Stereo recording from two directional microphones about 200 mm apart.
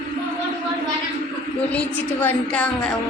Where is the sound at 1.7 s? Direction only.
10° left (ahead or behind).